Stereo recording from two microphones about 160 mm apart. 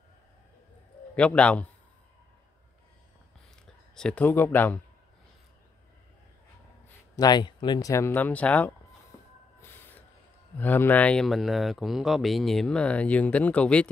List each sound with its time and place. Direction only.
1.1 s speech: 5° left (ahead or behind)
3.9 s speech: 5° left (ahead or behind)
7.2 s speech: 25° left (ahead or behind); by 8.7 s 10° left (ahead or behind)
9.6 s snort: 10° left (ahead or behind)
10.6 s speech: 10° left (ahead or behind)